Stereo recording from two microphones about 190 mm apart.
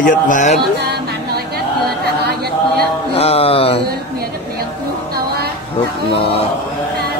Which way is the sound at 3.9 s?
55° right (ahead or behind).